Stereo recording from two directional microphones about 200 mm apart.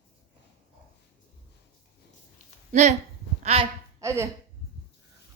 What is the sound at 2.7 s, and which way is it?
Speech, 35° right (ahead or behind).